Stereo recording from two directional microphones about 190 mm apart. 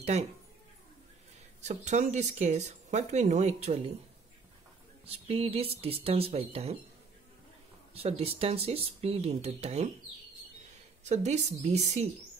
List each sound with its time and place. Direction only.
1.6 s speech: 40° right (ahead or behind)
5.0 s speech: 30° right (ahead or behind)
7.9 s speech: 30° right (ahead or behind)
11.1 s speech: 35° right (ahead or behind)